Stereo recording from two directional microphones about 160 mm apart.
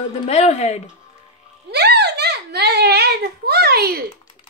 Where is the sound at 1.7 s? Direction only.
90° right.